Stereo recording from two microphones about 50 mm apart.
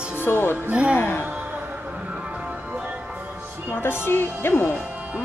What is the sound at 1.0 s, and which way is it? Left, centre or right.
Speech, left.